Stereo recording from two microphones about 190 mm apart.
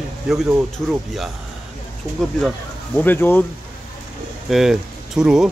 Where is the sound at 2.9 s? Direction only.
10° left (ahead or behind).